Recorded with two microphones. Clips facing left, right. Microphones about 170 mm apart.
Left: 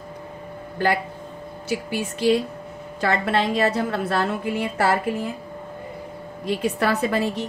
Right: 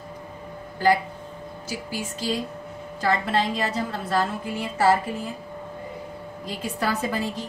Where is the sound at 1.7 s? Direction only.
65° left (ahead or behind).